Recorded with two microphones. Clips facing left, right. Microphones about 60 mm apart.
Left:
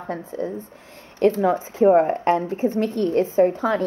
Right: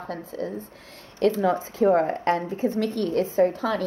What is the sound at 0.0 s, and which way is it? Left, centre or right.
A woman's voice, left.